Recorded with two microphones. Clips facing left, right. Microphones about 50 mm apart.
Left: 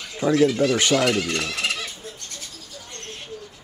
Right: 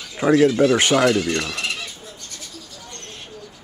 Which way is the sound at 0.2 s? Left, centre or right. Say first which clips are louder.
Right 3 dB; right.